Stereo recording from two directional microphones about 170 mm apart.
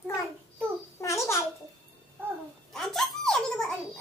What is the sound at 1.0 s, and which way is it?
Babbling, 15° left (ahead or behind).